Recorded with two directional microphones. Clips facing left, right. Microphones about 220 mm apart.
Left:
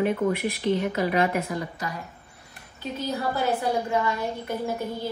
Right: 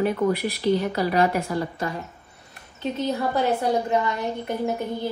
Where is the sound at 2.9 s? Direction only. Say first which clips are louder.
Right 3 dB; 20° right (ahead or behind).